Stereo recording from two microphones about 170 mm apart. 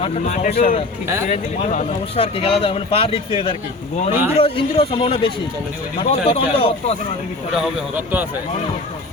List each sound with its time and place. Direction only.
0.0 s speech: 40° left (ahead or behind)
1.0 s speech: 15° right (ahead or behind)
1.3 s speech: 45° left (ahead or behind)
7.5 s speech: centre (ahead or behind)